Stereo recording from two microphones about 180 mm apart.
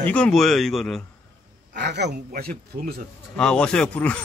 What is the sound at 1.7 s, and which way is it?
Speech, 70° right (ahead or behind).